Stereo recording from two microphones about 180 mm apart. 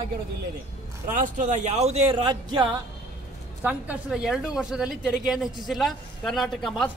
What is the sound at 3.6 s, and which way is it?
A man's voice, 5° right (ahead or behind).